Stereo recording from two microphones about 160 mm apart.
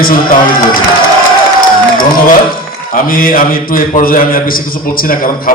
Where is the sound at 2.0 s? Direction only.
60° left (ahead or behind).